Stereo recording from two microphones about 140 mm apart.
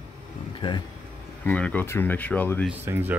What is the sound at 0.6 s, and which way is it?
Speech, 35° left (ahead or behind).